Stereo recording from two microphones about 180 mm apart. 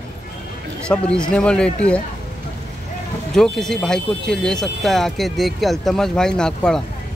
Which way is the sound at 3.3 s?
5° left (ahead or behind).